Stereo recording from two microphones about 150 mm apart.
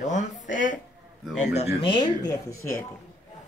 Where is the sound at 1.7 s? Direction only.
35° left (ahead or behind); by 2.9 s 20° left (ahead or behind).